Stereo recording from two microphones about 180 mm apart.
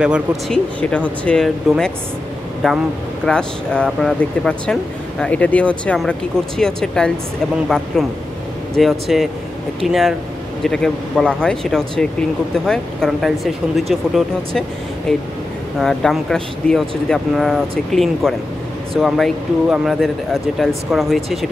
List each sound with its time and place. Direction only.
0.0 s speech: 5° right (ahead or behind)
0.7 s speech: 5° left (ahead or behind)